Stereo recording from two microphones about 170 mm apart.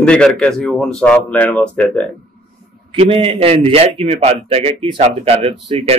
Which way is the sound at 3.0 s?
35° right (ahead or behind).